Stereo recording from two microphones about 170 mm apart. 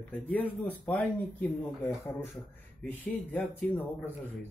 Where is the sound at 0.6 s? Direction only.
10° left (ahead or behind).